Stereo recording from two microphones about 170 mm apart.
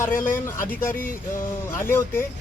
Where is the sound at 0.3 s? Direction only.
15° left (ahead or behind).